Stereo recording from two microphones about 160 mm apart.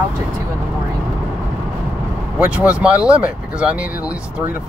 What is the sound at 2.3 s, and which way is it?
Speech, 10° right (ahead or behind).